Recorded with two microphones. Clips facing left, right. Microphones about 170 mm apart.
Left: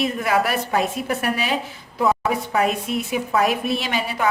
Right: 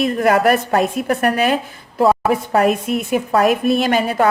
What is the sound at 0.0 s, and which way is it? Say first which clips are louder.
A woman's voice: right 6 dB; 50° right (ahead or behind).